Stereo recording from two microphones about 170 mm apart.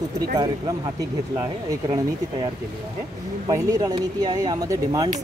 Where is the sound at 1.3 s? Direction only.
20° right (ahead or behind).